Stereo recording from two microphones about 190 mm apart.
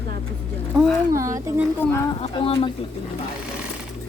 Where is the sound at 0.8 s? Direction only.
15° right (ahead or behind).